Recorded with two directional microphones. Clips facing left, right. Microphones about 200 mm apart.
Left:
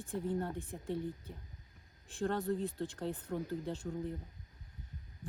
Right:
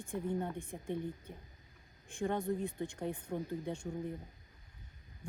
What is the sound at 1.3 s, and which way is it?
Speech, 55° right (ahead or behind).